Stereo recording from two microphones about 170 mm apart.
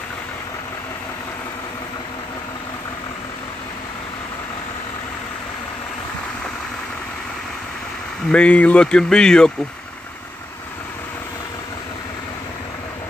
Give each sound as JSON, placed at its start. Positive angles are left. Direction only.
{"t": 8.3, "sound": "speech", "side_deg": 5}